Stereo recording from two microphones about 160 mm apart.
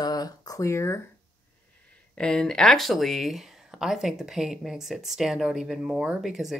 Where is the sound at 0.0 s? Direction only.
25° left (ahead or behind).